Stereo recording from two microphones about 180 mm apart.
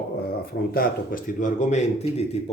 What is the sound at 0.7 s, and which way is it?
A man's voice, 55° left (ahead or behind).